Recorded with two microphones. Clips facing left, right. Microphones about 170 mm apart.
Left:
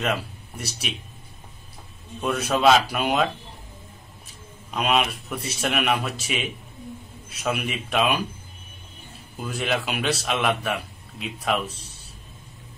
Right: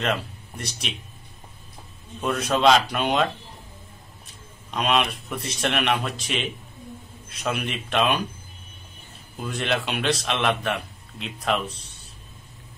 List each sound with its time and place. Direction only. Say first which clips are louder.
0.0 s speech: even; 5° left (ahead or behind)
2.2 s speech: even; 5° left (ahead or behind)
4.6 s a man's voice: even; 5° left (ahead or behind)
9.4 s speech: even; centre (ahead or behind)